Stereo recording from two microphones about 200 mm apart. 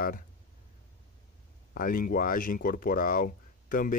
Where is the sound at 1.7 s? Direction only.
45° left (ahead or behind).